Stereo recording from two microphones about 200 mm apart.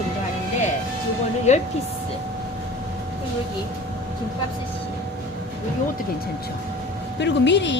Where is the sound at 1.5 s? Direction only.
35° left (ahead or behind).